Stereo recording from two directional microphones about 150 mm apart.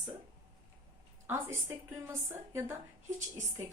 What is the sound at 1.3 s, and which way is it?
A woman's voice, 20° right (ahead or behind).